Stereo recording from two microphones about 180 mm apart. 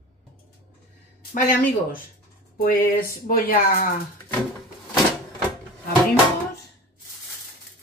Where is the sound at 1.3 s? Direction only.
45° left (ahead or behind).